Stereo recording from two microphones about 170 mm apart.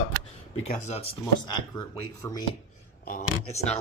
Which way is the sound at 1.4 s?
25° left (ahead or behind).